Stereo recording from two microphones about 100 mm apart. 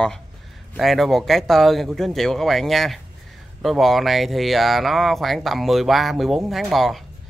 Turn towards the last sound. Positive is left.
turn(degrees=0)  # may be behind; listen again after turning